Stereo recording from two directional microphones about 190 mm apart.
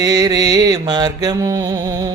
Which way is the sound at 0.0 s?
20° right (ahead or behind).